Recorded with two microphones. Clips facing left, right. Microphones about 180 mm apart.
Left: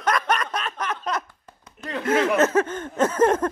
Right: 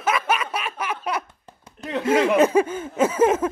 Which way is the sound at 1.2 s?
25° right (ahead or behind).